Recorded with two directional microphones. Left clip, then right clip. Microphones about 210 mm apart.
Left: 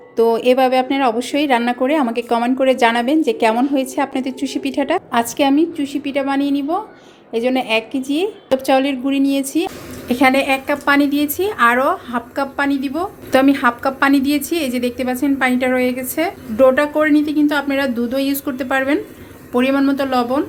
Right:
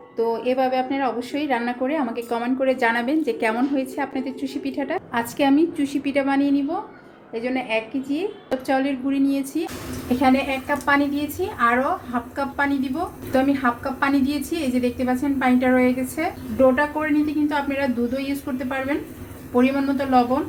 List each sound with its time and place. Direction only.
0.2 s a woman's voice: 35° left (ahead or behind)
7.3 s a woman's voice: 40° left (ahead or behind)